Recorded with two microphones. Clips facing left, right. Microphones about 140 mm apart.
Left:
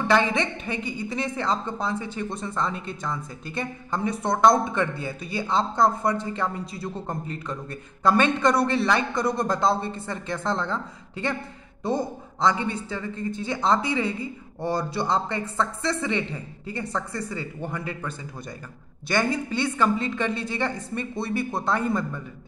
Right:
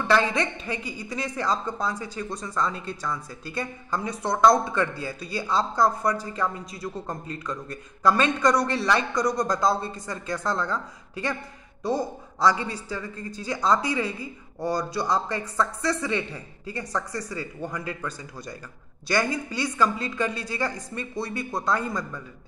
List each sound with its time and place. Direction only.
0.1 s a man's voice: 25° left (ahead or behind)